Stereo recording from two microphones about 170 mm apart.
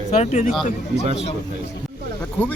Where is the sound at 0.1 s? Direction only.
45° left (ahead or behind).